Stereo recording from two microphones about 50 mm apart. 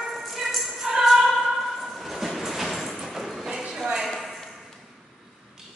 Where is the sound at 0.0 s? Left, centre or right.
Centre.